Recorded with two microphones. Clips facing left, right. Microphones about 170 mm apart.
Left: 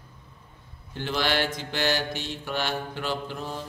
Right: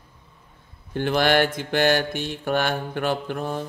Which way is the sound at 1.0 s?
55° right (ahead or behind).